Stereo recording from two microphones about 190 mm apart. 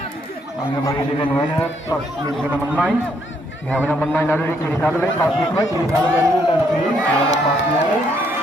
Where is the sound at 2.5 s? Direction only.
10° right (ahead or behind).